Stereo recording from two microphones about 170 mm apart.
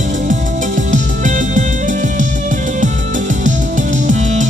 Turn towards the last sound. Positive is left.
turn(degrees=-45)  # may be behind; listen again after turning